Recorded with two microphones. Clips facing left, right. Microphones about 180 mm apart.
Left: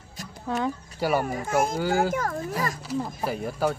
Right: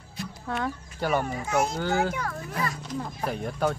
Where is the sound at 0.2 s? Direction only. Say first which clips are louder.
Right 5 dB; 45° left (ahead or behind).